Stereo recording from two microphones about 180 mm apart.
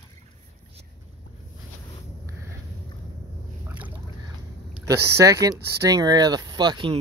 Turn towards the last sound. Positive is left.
turn(degrees=-25)  # may be behind; listen again after turning